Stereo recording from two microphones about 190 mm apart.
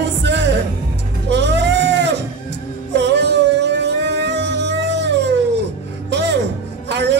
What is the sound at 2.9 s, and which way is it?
Music, 65° right (ahead or behind).